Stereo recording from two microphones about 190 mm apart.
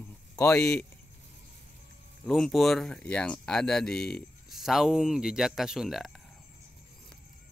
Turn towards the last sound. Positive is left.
turn(degrees=0)  # may be behind; listen again after turning